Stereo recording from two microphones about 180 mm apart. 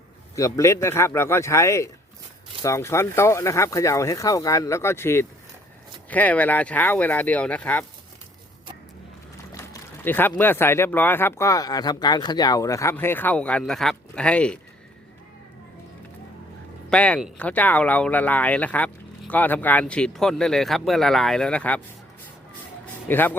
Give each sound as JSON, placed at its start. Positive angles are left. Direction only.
{"t": 0.3, "sound": "speech", "side_deg": 15}
{"t": 9.6, "sound": "speech", "side_deg": 15}
{"t": 16.9, "sound": "speech", "side_deg": 5}
{"t": 23.0, "sound": "speech", "side_deg": 10}